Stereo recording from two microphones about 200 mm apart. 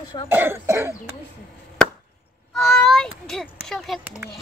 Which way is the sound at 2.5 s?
Centre (ahead or behind).